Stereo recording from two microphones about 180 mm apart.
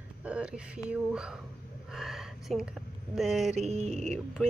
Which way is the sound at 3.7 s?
35° right (ahead or behind).